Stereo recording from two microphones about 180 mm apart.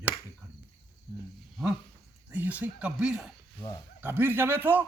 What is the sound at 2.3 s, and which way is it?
A man's voice, 10° right (ahead or behind).